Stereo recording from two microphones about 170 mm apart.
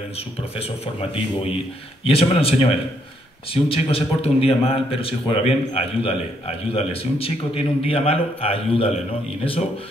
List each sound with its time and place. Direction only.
0.6 s a man's voice: 35° left (ahead or behind)